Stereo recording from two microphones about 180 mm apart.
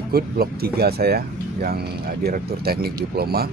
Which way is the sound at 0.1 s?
60° right (ahead or behind).